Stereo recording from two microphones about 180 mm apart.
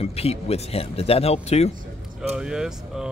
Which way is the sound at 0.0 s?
35° left (ahead or behind).